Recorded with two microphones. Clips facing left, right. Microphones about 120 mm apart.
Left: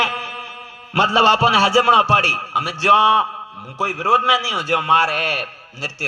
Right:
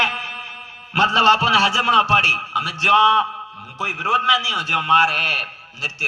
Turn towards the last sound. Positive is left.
turn(degrees=40)  # may be behind; listen again after turning